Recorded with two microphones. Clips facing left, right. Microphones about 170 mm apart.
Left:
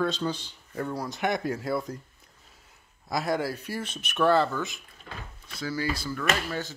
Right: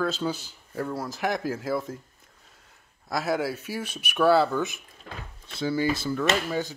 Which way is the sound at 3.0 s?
5° right (ahead or behind).